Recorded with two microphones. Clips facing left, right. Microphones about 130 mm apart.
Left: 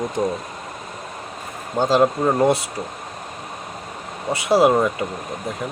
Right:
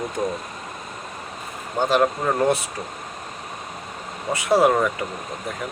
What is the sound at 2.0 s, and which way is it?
Speech, 15° left (ahead or behind).